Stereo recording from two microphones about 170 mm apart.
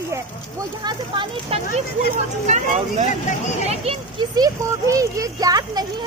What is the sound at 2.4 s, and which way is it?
Speech, 45° right (ahead or behind).